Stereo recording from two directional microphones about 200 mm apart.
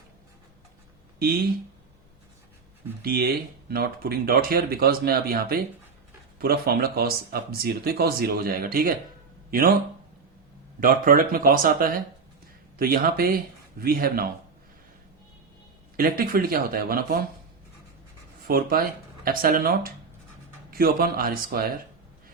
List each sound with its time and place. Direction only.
3.0 s speech: 50° right (ahead or behind)
10.8 s speech: 45° right (ahead or behind)
16.0 s speech: 45° right (ahead or behind)
18.4 s speech: 45° right (ahead or behind)